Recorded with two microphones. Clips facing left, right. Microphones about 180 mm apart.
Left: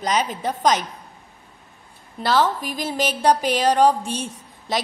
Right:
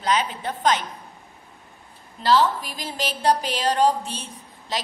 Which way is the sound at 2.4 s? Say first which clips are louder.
Left 3 dB; 45° left (ahead or behind).